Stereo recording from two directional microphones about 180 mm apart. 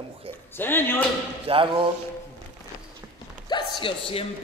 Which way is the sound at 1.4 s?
30° right (ahead or behind).